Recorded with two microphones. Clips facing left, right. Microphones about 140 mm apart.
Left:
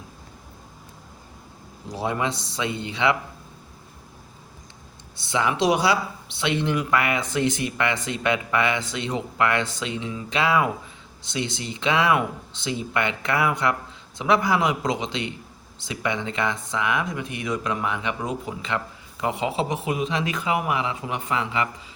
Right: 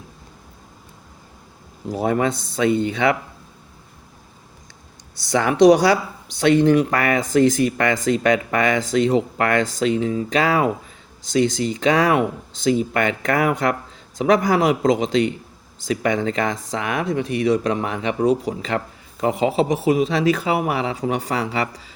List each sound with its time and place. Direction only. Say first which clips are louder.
1.9 s speech: right 6 dB; 45° right (ahead or behind)
5.4 s speech: right 8 dB; 50° right (ahead or behind)